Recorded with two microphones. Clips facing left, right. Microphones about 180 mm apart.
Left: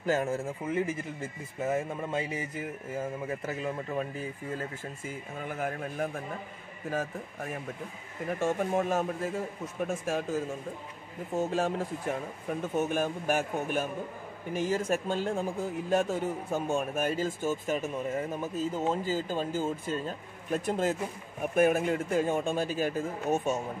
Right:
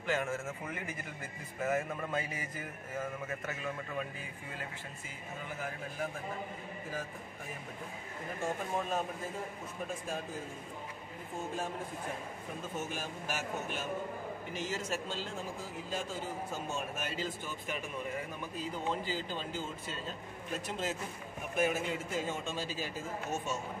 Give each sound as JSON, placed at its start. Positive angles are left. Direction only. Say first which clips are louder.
{"t": 0.0, "sound": "speech", "louder": "left 6 dB", "side_deg": 40}
{"t": 6.9, "sound": "speech", "louder": "left 11 dB", "side_deg": 70}
{"t": 12.7, "sound": "a man's voice", "louder": "left 12 dB", "side_deg": 60}